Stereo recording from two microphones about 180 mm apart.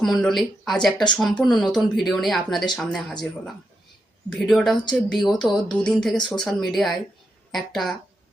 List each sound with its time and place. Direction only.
0.0 s speech: centre (ahead or behind)